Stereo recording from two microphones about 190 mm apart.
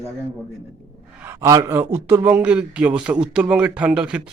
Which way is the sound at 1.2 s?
15° right (ahead or behind).